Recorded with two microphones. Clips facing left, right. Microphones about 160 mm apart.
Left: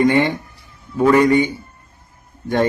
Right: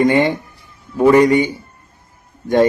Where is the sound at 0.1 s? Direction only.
15° right (ahead or behind).